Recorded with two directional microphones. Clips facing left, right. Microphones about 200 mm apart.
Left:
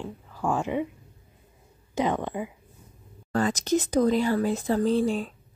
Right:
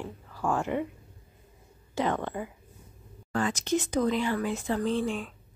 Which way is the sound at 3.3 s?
40° left (ahead or behind).